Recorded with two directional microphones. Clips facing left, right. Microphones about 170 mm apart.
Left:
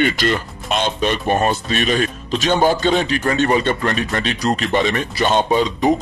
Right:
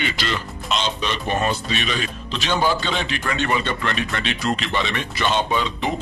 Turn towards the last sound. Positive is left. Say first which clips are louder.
# left 6 dB
turn(degrees=40)  # may be behind; listen again after turning